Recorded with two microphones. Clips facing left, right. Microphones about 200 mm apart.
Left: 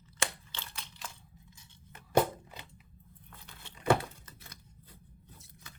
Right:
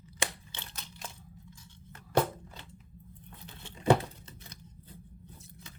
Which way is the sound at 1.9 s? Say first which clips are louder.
Left 1 dB; 15° left (ahead or behind).